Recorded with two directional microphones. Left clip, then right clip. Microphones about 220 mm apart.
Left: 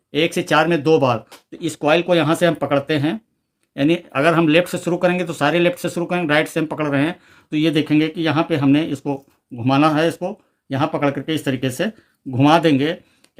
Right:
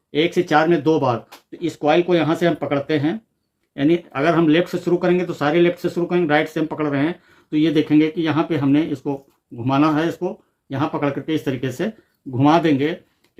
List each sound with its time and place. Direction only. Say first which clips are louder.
0.1 s speech: even; 50° left (ahead or behind)